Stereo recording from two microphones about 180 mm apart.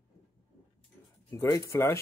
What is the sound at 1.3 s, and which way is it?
Speech, 20° left (ahead or behind).